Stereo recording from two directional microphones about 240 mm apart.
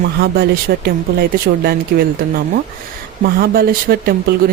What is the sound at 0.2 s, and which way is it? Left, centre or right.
Speech, right.